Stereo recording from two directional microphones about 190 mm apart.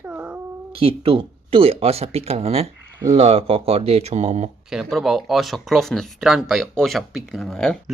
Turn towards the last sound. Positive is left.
turn(degrees=5)  # may be behind; listen again after turning